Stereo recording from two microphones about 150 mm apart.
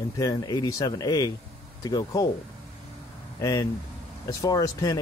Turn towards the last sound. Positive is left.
turn(degrees=25)  # may be behind; listen again after turning